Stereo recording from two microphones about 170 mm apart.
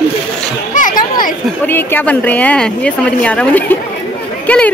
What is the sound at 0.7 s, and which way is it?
Speech, 50° left (ahead or behind).